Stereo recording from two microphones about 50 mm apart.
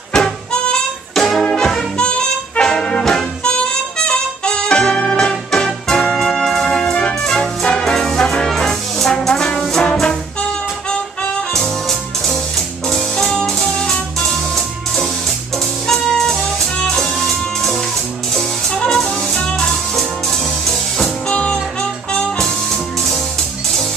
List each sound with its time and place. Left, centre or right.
0.1 s harmonica: centre
1.1 s music: centre
7.8 s brass instrument: centre
11.5 s music: centre
15.9 s jazz: centre
16.8 s music: centre
18.8 s music: centre
21.3 s music: centre